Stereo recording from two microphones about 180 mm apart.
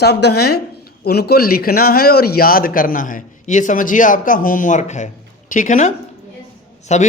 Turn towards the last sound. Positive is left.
turn(degrees=40)  # may be behind; listen again after turning